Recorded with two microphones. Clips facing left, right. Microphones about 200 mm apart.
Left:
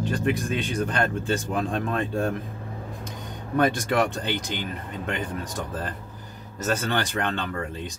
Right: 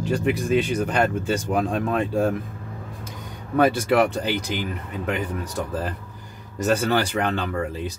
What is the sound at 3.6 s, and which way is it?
Speech, 5° right (ahead or behind).